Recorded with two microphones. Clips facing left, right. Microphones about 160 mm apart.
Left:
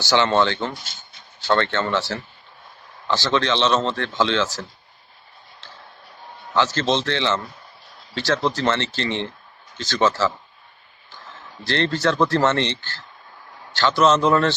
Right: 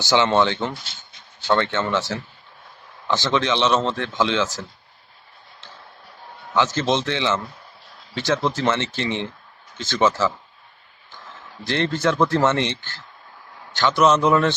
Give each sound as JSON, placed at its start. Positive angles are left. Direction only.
{"t": 0.0, "sound": "speech", "side_deg": -20}
{"t": 6.5, "sound": "speech", "side_deg": -15}
{"t": 11.6, "sound": "speech", "side_deg": -15}